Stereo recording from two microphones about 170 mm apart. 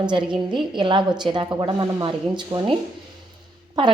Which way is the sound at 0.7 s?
30° right (ahead or behind).